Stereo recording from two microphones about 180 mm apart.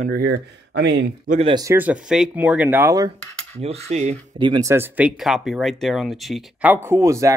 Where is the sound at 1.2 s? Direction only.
40° right (ahead or behind).